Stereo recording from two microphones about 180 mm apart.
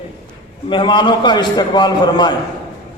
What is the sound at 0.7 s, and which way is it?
A man's voice, 25° left (ahead or behind).